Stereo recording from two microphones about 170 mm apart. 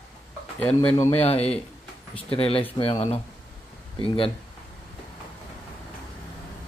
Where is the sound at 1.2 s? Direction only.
35° left (ahead or behind).